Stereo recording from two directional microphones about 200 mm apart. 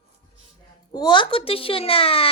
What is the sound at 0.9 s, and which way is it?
Speech, 20° left (ahead or behind).